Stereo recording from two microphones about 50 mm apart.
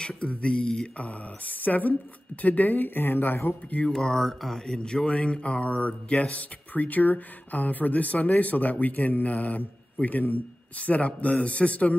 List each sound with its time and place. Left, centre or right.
0.2 s speech: left
0.9 s speech: left
3.8 s speech: centre; by 12.0 s left